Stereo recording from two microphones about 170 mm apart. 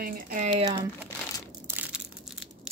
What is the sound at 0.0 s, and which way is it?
Speech, 50° right (ahead or behind).